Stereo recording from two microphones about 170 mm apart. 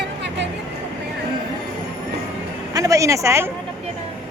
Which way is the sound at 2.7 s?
20° right (ahead or behind).